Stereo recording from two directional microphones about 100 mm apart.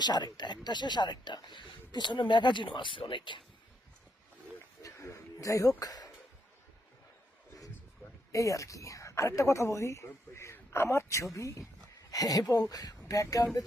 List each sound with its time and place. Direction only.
0.0 s speech: 45° left (ahead or behind)
4.8 s a sound: 30° left (ahead or behind)
8.3 s speech: 30° left (ahead or behind)